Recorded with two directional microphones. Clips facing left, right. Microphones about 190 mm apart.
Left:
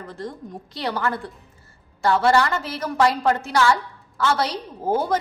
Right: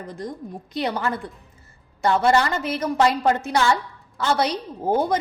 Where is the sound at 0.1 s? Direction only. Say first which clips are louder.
Even; 15° right (ahead or behind).